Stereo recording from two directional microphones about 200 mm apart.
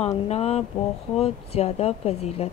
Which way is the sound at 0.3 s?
30° left (ahead or behind).